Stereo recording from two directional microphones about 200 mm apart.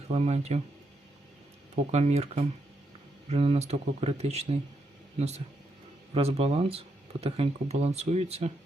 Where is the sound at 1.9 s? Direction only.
35° right (ahead or behind).